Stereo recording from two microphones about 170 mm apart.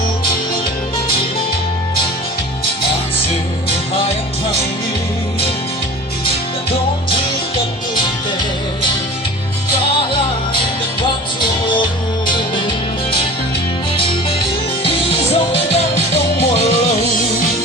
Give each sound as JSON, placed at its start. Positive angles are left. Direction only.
{"t": 11.3, "sound": "music", "side_deg": 30}